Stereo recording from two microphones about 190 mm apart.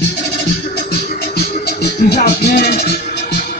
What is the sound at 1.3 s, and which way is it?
Music, 55° left (ahead or behind).